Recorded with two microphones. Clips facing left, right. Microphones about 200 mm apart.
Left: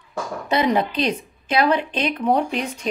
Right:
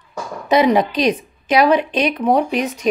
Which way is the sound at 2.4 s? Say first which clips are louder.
Right 5 dB; 15° right (ahead or behind).